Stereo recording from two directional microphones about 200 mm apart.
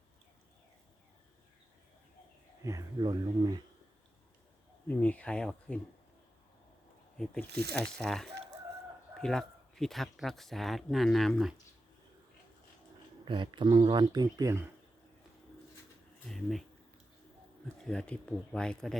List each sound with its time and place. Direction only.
2.6 s speech: 20° right (ahead or behind)
4.9 s speech: 5° left (ahead or behind)
7.5 s speech: 55° right (ahead or behind)
7.9 s speech: centre (ahead or behind)
13.2 s speech: 25° right (ahead or behind)
16.2 s speech: centre (ahead or behind)
17.8 s speech: 5° left (ahead or behind)